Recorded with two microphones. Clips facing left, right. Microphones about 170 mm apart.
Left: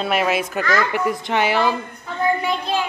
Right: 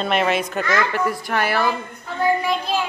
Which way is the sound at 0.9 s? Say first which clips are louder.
Left 1 dB; 15° left (ahead or behind).